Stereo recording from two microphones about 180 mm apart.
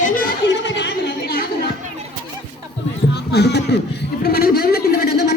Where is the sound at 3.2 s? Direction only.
65° left (ahead or behind).